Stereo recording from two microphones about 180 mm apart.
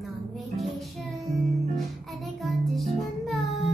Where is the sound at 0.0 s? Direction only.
Centre (ahead or behind).